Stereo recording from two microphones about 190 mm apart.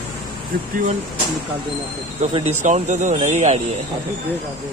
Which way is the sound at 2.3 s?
35° right (ahead or behind).